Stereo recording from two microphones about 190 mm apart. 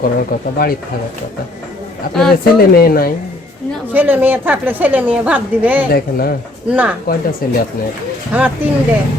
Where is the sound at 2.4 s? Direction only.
50° left (ahead or behind).